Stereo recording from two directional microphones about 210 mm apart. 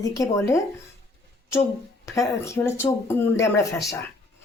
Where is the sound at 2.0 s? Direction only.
15° left (ahead or behind).